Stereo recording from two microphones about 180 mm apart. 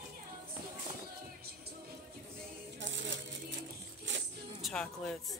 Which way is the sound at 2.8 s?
85° right.